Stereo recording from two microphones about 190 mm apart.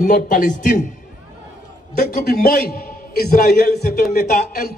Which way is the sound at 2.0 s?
50° left (ahead or behind).